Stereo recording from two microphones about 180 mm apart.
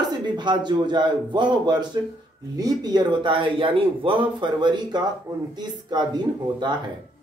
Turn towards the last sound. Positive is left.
turn(degrees=-25)  # may be behind; listen again after turning